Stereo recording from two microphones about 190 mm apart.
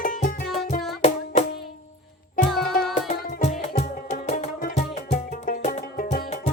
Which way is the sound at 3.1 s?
35° left (ahead or behind).